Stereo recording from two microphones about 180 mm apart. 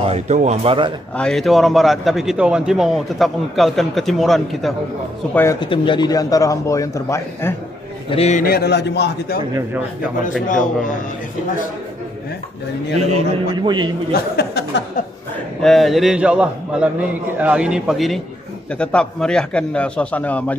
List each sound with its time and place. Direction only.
0.0 s speech: 35° right (ahead or behind)
1.1 s a man's voice: 5° left (ahead or behind)
5.3 s a man's voice: 15° left (ahead or behind)
5.6 s a man's voice: 25° left (ahead or behind)
8.1 s a man's voice: 35° left (ahead or behind)
8.5 s speech: 65° left (ahead or behind)
10.5 s a man's voice: 45° left (ahead or behind)
13.6 s a man's voice: 25° right (ahead or behind)
14.1 s speech: 60° left (ahead or behind)
15.6 s a man's voice: centre (ahead or behind)